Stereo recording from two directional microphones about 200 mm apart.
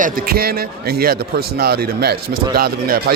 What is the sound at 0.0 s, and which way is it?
A man's voice, 50° right (ahead or behind).